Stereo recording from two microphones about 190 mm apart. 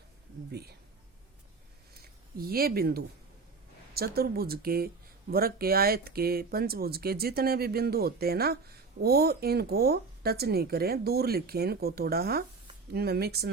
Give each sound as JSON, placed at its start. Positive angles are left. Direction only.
{"t": 0.5, "sound": "speech", "side_deg": -55}
{"t": 2.0, "sound": "speech", "side_deg": -55}